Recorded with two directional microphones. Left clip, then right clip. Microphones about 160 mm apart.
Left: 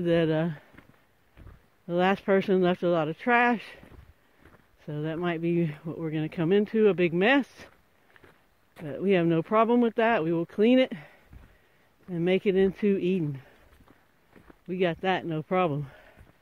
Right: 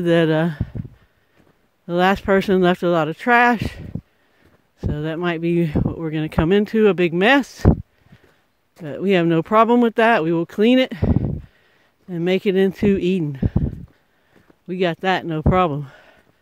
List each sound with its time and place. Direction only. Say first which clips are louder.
0.0 s speech: right 8 dB; 55° right (ahead or behind)
1.9 s speech: right 7 dB; 50° right (ahead or behind)
8.8 s speech: right 7 dB; 50° right (ahead or behind)
14.7 s speech: right 7 dB; 45° right (ahead or behind)